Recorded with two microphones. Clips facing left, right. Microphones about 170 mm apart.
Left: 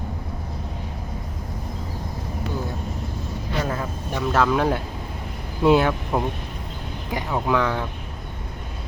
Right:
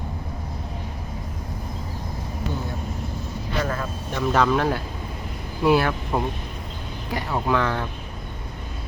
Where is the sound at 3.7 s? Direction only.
15° left (ahead or behind).